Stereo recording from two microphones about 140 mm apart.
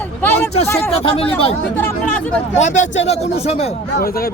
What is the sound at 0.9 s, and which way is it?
Speech, 45° left (ahead or behind).